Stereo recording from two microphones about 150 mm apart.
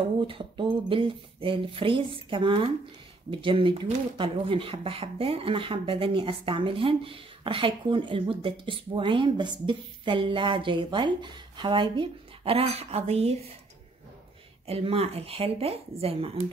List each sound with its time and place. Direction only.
0.2 s speech: 35° right (ahead or behind)
14.7 s speech: 40° right (ahead or behind)